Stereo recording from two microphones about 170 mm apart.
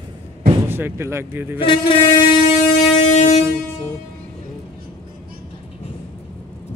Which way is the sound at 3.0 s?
45° left (ahead or behind).